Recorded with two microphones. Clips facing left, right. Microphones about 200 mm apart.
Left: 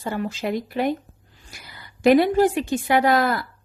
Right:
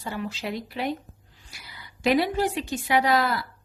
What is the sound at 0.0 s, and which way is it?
A woman's voice, 50° left (ahead or behind).